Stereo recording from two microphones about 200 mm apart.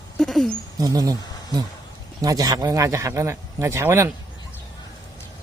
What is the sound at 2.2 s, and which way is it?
A man's voice, 20° right (ahead or behind).